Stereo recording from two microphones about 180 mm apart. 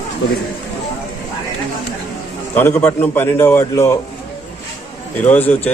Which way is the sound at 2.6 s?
10° left (ahead or behind).